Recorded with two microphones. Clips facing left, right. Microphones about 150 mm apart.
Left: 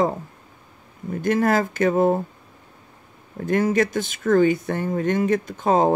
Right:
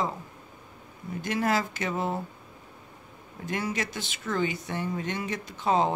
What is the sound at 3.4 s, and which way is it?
Speech, 50° left (ahead or behind).